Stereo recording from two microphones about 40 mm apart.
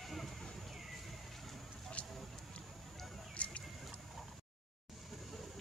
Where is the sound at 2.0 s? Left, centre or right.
Left.